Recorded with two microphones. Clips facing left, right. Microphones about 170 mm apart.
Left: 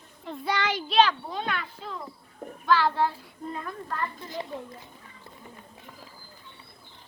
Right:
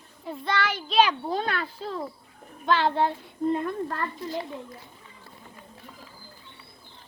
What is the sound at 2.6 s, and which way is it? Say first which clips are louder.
Child singing: right 1 dB; 20° right (ahead or behind).